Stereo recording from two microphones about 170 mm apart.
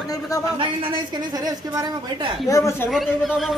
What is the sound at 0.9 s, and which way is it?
A woman's voice, 20° right (ahead or behind).